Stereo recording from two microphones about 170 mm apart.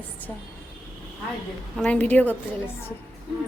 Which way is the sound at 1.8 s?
10° left (ahead or behind).